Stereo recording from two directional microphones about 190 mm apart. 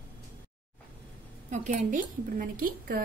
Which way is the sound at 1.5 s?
40° right (ahead or behind).